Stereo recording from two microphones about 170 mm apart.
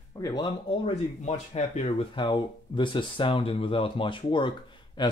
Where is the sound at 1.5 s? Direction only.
40° left (ahead or behind).